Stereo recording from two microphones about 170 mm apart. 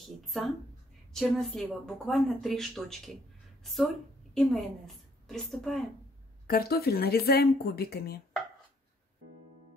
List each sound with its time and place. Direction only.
0.2 s a woman's voice: centre (ahead or behind)
6.4 s speech: 60° left (ahead or behind)